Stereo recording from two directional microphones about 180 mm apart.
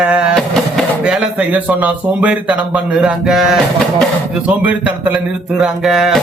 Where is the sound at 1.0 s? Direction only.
5° right (ahead or behind).